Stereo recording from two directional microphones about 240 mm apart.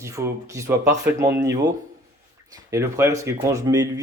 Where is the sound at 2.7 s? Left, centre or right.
Centre.